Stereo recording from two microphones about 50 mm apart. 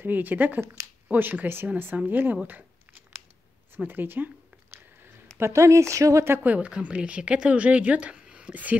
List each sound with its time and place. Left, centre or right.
0.0 s speech: right
2.4 s a sound: right
5.4 s speech: right
6.4 s speech: right
6.7 s speech: right